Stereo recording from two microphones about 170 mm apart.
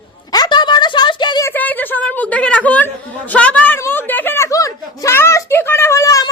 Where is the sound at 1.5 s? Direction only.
10° left (ahead or behind).